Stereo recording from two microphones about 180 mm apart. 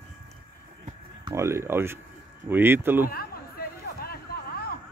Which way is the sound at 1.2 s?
15° right (ahead or behind).